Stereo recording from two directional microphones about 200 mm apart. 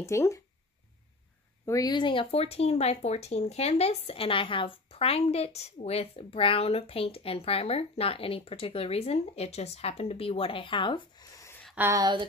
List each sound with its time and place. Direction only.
0.0 s speech: 15° left (ahead or behind)
1.7 s speech: 20° left (ahead or behind)
11.6 s a sound: 5° right (ahead or behind)
11.9 s speech: 20° right (ahead or behind)